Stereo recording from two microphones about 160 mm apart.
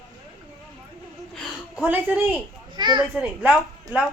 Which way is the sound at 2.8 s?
30° right (ahead or behind).